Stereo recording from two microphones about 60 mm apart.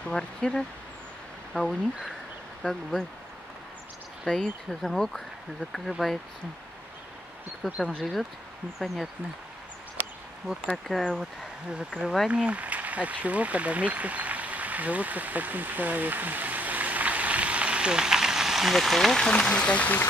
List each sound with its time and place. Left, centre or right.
0.1 s speech: centre
1.5 s speech: centre
4.3 s speech: centre
7.6 s speech: centre
10.9 s speech: centre
12.0 s speech: centre
12.3 s speech: right; by 19.1 s centre
19.1 s speech: centre